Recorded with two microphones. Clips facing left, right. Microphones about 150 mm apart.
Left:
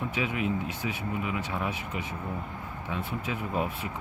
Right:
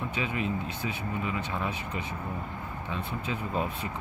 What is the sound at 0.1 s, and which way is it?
Speech, 10° left (ahead or behind).